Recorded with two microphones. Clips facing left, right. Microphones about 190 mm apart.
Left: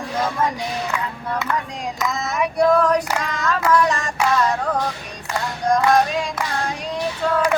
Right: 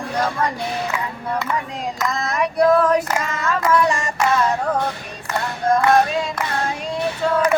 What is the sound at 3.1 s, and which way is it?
Music, 5° right (ahead or behind).